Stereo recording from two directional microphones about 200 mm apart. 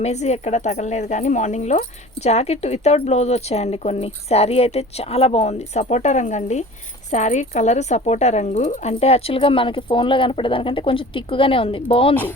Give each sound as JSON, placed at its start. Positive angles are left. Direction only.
{"t": 0.0, "sound": "speech", "side_deg": 35}